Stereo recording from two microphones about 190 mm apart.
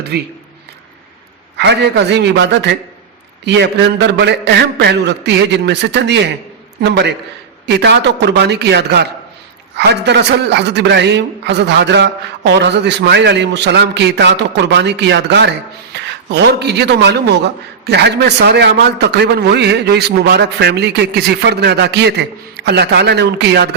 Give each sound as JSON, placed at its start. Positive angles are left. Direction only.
{"t": 0.1, "sound": "speech", "side_deg": -60}
{"t": 1.5, "sound": "speech", "side_deg": -60}